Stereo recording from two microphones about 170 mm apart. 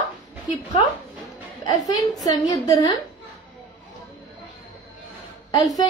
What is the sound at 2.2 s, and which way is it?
Speech, 20° left (ahead or behind).